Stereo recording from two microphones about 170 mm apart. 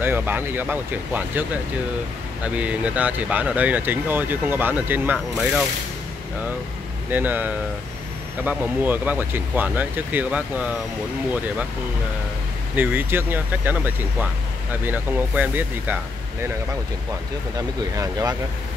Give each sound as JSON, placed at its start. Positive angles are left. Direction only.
{"t": 0.0, "sound": "speech", "side_deg": -10}
{"t": 7.1, "sound": "speech", "side_deg": -10}
{"t": 12.7, "sound": "speech", "side_deg": -10}
{"t": 17.6, "sound": "speech", "side_deg": -20}